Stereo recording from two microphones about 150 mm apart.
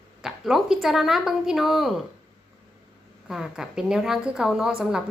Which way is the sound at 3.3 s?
5° right (ahead or behind).